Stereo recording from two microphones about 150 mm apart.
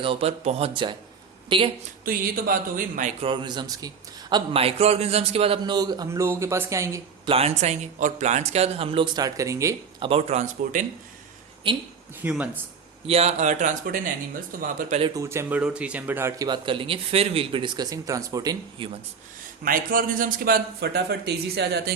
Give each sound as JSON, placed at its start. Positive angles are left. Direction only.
{"t": 0.0, "sound": "speech", "side_deg": -40}
{"t": 2.0, "sound": "speech", "side_deg": -75}
{"t": 3.2, "sound": "a man's voice", "side_deg": -35}
{"t": 7.3, "sound": "speech", "side_deg": -45}
{"t": 10.0, "sound": "speech", "side_deg": -40}
{"t": 11.6, "sound": "speech", "side_deg": -35}
{"t": 12.2, "sound": "speech", "side_deg": -10}
{"t": 13.1, "sound": "speech", "side_deg": -45}
{"t": 15.1, "sound": "speech", "side_deg": -20}
{"t": 16.5, "sound": "speech", "side_deg": -35}
{"t": 19.6, "sound": "speech", "side_deg": -70}